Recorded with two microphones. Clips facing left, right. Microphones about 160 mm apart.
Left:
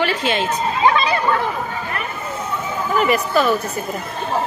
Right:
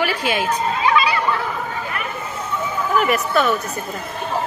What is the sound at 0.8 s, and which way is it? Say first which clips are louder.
Chatter: left 2 dB; 40° left (ahead or behind).